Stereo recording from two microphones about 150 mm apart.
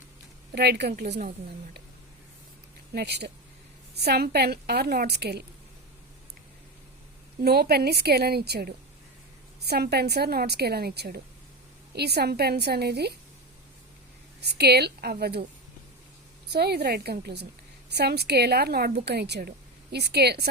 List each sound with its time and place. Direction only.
0.5 s a woman's voice: 90° right
2.9 s a woman's voice: 90° right
7.4 s a woman's voice: 90° right
14.4 s a woman's voice: 90° right
16.5 s a woman's voice: 90° right